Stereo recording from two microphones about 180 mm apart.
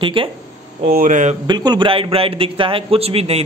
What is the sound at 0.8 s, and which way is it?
Speech, 50° right (ahead or behind).